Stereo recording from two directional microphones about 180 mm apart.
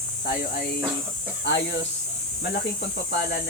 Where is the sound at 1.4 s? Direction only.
80° left.